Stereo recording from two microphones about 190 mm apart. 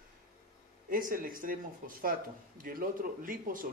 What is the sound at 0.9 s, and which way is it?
Speech, 50° right (ahead or behind).